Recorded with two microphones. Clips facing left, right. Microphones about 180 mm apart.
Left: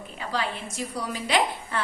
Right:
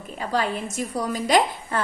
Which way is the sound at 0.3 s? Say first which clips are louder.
Right 5 dB; 45° right (ahead or behind).